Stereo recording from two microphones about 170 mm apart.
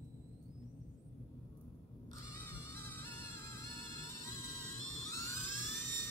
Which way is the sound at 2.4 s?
10° left (ahead or behind).